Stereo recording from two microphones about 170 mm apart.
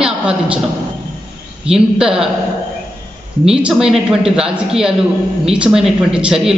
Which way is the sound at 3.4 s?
5° right (ahead or behind).